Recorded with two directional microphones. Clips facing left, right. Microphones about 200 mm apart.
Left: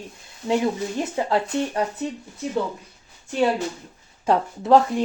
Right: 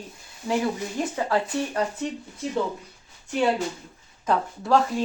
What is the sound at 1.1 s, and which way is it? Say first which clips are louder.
Speech: left 3 dB; 25° left (ahead or behind).